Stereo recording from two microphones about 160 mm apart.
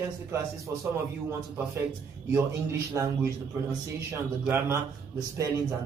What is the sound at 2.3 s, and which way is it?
A man's voice, 20° right (ahead or behind).